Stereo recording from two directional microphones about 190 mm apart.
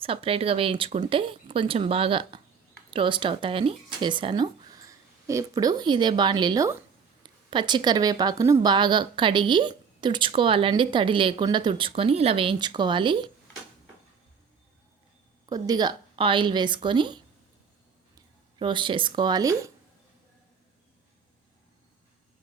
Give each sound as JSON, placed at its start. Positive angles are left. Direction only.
{"t": 0.0, "sound": "a woman's voice", "side_deg": -30}
{"t": 15.4, "sound": "a woman's voice", "side_deg": -20}
{"t": 18.6, "sound": "a woman's voice", "side_deg": -25}